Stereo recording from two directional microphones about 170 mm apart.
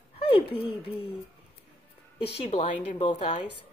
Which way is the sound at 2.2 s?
35° left (ahead or behind).